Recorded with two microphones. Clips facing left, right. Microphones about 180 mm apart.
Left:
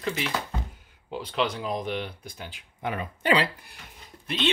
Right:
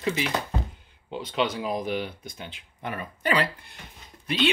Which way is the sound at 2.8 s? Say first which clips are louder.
Left 1 dB; 20° left (ahead or behind).